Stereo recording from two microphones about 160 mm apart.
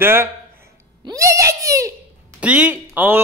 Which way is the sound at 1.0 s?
20° right (ahead or behind).